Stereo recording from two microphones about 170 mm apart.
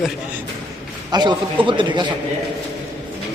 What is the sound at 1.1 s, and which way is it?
Speech, 25° right (ahead or behind).